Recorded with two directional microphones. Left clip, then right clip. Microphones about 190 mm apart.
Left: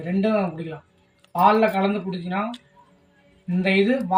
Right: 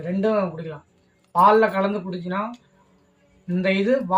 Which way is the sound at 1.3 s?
25° right (ahead or behind).